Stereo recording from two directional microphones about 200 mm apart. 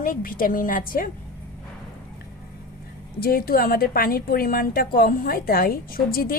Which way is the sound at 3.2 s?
50° left (ahead or behind).